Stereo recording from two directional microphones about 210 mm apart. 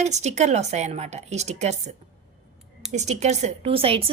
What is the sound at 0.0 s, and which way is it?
A woman's voice, 35° right (ahead or behind).